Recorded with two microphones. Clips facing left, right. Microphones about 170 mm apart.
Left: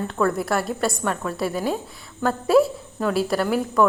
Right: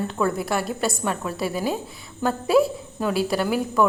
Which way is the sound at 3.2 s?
Centre (ahead or behind).